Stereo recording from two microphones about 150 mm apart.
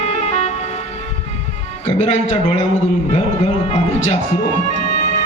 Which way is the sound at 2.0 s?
50° left (ahead or behind).